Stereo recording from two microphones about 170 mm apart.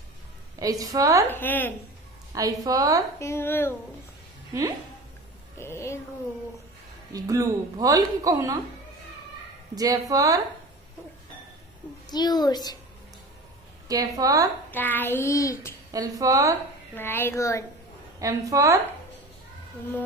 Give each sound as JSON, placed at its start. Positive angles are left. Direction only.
{"t": 0.6, "sound": "speech", "side_deg": -20}
{"t": 1.3, "sound": "child singing", "side_deg": 10}
{"t": 2.3, "sound": "speech", "side_deg": -20}
{"t": 3.2, "sound": "child singing", "side_deg": 15}
{"t": 5.6, "sound": "a sound", "side_deg": 15}
{"t": 7.1, "sound": "speech", "side_deg": -20}
{"t": 9.8, "sound": "speech", "side_deg": -20}
{"t": 12.1, "sound": "a woman's voice", "side_deg": 25}
{"t": 13.8, "sound": "speech", "side_deg": -20}
{"t": 14.7, "sound": "child singing", "side_deg": 10}
{"t": 15.9, "sound": "speech", "side_deg": -20}
{"t": 16.9, "sound": "child singing", "side_deg": 15}
{"t": 18.2, "sound": "speech", "side_deg": -20}